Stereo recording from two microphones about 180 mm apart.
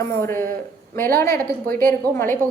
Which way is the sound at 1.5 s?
55° right (ahead or behind).